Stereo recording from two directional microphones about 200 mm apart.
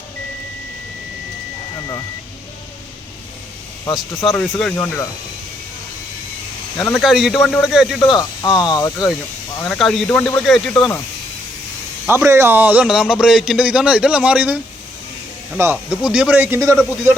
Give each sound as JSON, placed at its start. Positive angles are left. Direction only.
{"t": 3.9, "sound": "speech", "side_deg": 0}
{"t": 6.9, "sound": "speech", "side_deg": 0}
{"t": 8.5, "sound": "speech", "side_deg": 20}
{"t": 9.6, "sound": "speech", "side_deg": 0}
{"t": 12.0, "sound": "speech", "side_deg": -15}